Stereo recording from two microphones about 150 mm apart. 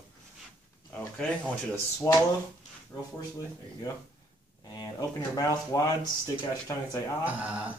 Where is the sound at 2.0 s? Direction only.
20° left (ahead or behind).